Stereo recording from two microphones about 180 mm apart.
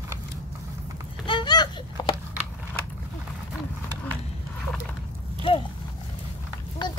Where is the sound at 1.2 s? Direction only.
25° left (ahead or behind).